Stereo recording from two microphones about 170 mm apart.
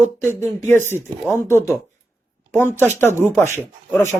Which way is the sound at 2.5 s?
15° left (ahead or behind).